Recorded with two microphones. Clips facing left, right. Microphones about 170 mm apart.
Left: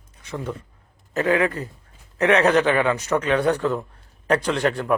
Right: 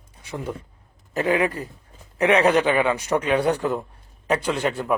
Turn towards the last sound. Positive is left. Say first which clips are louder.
# left 2 dB
turn(degrees=0)  # may be behind; listen again after turning